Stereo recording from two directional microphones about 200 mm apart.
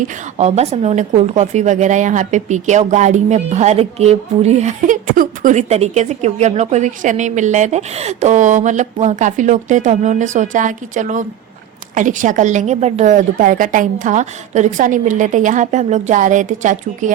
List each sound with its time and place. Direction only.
0.0 s a woman's voice: 35° right (ahead or behind)